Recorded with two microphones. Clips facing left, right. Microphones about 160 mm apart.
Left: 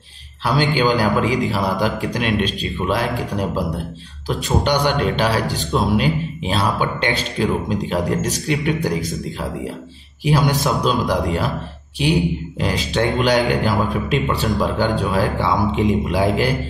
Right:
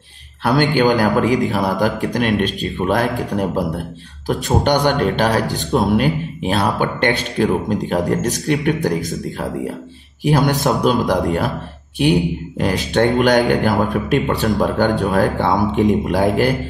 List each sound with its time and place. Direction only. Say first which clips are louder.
0.4 s speech: right 3 dB; 55° right (ahead or behind)
10.2 s speech: right 2 dB; 50° right (ahead or behind)